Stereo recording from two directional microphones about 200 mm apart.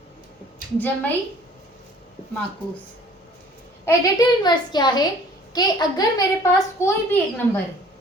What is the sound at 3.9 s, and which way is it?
A woman's voice, 20° left (ahead or behind).